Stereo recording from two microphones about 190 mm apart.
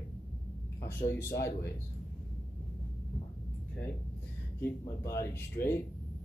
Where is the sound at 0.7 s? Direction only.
15° left (ahead or behind).